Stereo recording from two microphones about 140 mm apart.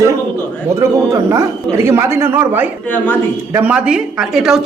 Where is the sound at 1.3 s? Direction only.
20° right (ahead or behind).